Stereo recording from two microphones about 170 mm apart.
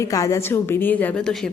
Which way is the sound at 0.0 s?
20° left (ahead or behind).